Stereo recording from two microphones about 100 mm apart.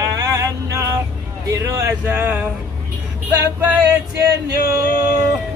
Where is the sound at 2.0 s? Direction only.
20° right (ahead or behind).